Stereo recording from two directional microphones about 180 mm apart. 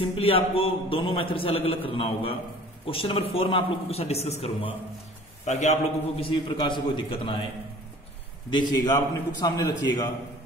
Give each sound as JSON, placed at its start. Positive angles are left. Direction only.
{"t": 0.0, "sound": "a man's voice", "side_deg": 30}
{"t": 8.5, "sound": "a man's voice", "side_deg": 25}